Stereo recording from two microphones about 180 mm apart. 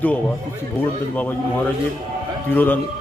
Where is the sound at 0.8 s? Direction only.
10° left (ahead or behind).